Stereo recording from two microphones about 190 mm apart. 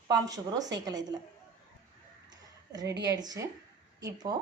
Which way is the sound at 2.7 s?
20° right (ahead or behind).